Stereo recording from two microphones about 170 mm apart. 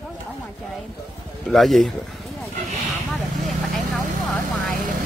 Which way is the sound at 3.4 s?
Centre (ahead or behind).